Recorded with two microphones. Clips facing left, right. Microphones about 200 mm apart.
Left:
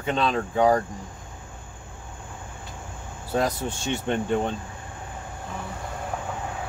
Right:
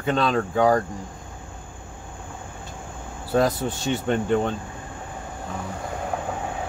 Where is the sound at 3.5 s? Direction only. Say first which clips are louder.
Right 3 dB; centre (ahead or behind).